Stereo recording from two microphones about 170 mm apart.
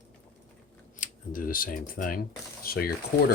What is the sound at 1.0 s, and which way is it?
Speech, 55° left (ahead or behind).